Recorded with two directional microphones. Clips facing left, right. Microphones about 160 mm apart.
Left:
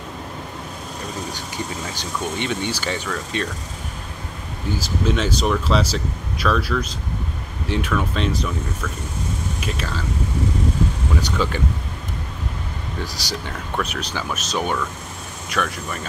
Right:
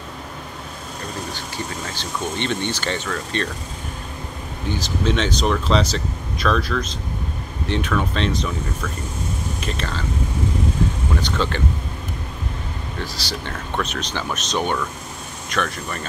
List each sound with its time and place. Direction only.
2.3 s speech: 10° left (ahead or behind)
4.6 s speech: 5° left (ahead or behind)
9.6 s speech: 5° left (ahead or behind)
11.1 s speech: 5° left (ahead or behind)
13.0 s speech: 15° left (ahead or behind)